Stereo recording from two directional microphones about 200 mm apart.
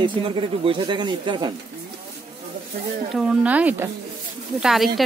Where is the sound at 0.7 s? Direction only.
25° right (ahead or behind).